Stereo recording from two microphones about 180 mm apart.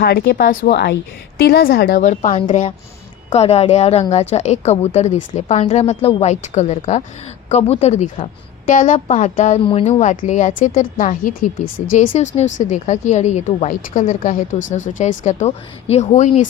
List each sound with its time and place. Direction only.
0.0 s a woman's voice: 60° left (ahead or behind)
1.4 s a woman's voice: 60° left (ahead or behind)